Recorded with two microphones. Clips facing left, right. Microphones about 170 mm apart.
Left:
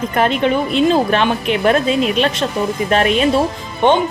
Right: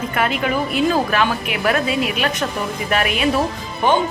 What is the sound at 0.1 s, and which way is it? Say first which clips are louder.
Speech: left 6 dB; 30° left (ahead or behind).